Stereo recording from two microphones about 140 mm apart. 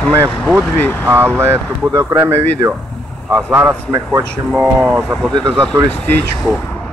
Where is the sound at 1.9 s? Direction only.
25° right (ahead or behind).